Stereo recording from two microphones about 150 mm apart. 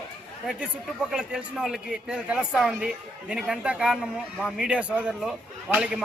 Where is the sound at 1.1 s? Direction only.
5° right (ahead or behind).